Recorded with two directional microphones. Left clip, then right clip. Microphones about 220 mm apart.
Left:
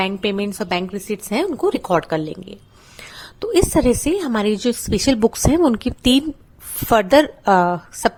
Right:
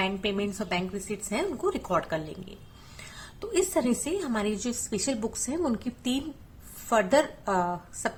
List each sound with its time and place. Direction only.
0.0 s a woman's voice: 45° left (ahead or behind)